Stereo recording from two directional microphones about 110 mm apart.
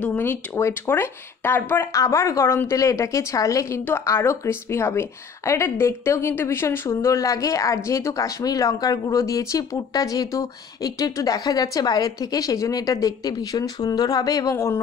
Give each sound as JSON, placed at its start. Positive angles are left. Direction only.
{"t": 0.0, "sound": "a woman's voice", "side_deg": 15}